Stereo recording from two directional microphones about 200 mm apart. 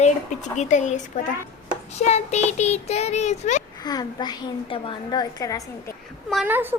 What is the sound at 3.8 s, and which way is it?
A woman's voice, 20° left (ahead or behind).